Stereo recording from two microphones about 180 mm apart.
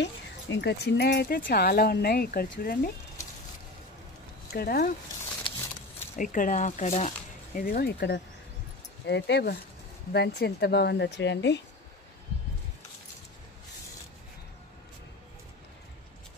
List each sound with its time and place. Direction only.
0.0 s speech: 75° left (ahead or behind); by 2.9 s 55° left (ahead or behind)
4.5 s speech: 60° left (ahead or behind)
6.1 s speech: 50° left (ahead or behind)
7.5 s speech: 55° left (ahead or behind); by 11.6 s 75° left (ahead or behind)